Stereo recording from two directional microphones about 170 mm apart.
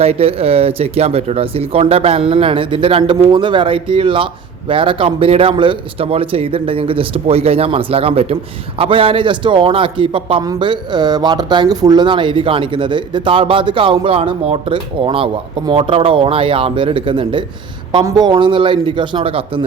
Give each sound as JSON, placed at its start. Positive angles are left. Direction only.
{"t": 0.0, "sound": "speech", "side_deg": -35}